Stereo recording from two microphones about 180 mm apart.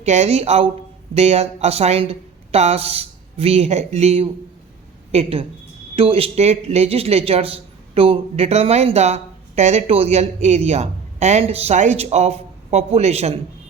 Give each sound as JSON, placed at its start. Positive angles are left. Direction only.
{"t": 0.0, "sound": "speech", "side_deg": -35}